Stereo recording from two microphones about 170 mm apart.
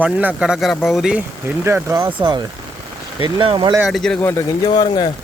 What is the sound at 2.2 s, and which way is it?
Speech, 30° right (ahead or behind).